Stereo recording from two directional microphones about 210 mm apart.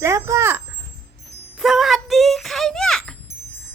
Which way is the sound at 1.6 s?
Centre (ahead or behind).